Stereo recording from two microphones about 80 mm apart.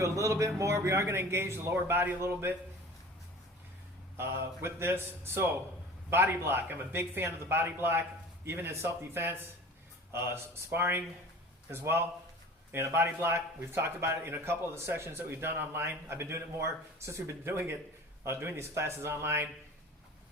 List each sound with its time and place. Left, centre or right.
0.0 s a man's voice: right
4.2 s a man's voice: right
12.7 s a man's voice: right